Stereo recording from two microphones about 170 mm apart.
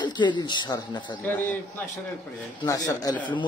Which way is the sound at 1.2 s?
10° left (ahead or behind).